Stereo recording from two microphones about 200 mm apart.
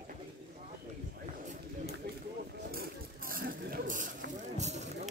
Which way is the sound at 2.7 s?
45° right (ahead or behind).